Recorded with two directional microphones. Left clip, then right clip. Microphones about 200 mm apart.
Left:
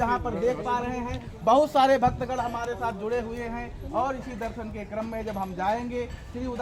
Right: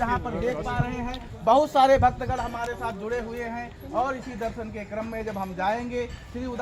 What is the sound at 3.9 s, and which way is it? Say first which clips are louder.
Speech: right 1 dB; 30° right (ahead or behind).